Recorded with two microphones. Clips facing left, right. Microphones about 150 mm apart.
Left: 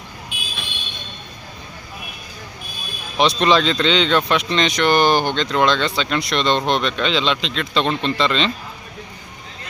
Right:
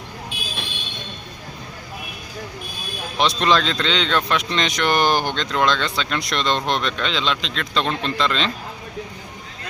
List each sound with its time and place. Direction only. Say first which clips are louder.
0.3 s vehicle: right 1 dB; 35° right (ahead or behind)
3.2 s speech: left 3 dB; centre (ahead or behind)